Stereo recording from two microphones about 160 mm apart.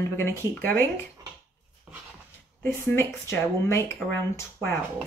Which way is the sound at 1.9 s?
10° right (ahead or behind).